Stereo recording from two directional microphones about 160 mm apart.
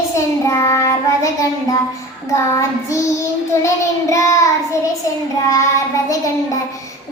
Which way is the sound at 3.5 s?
15° left (ahead or behind).